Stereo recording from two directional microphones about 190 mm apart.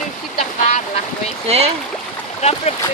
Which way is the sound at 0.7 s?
40° left (ahead or behind).